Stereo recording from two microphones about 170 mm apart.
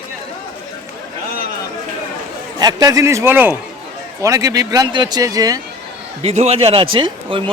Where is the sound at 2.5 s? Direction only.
20° right (ahead or behind).